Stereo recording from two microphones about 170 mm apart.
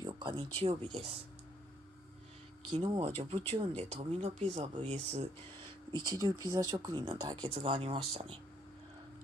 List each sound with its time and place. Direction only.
0.0 s speech: 25° right (ahead or behind)
2.7 s speech: 30° right (ahead or behind)
5.9 s speech: 25° right (ahead or behind)